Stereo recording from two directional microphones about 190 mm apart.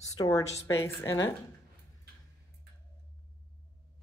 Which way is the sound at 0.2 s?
20° left (ahead or behind).